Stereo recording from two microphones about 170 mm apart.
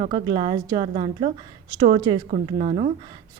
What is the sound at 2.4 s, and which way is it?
Speech, 35° right (ahead or behind).